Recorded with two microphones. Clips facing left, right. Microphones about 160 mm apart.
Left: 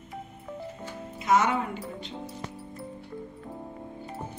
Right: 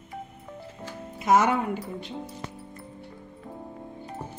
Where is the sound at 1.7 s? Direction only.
5° right (ahead or behind).